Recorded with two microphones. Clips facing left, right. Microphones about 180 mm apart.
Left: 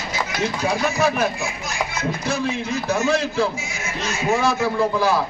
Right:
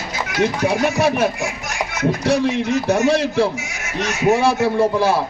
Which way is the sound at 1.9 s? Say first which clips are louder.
Right 9 dB; 70° right (ahead or behind).